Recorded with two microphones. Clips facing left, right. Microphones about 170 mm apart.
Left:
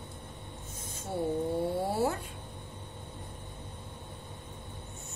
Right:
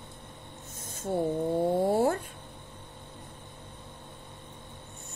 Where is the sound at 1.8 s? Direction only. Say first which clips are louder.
Right 5 dB; 50° right (ahead or behind).